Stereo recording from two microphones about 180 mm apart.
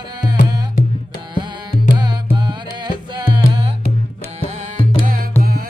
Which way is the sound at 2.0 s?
25° right (ahead or behind).